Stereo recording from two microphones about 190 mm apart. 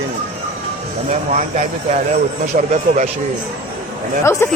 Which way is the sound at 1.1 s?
40° right (ahead or behind).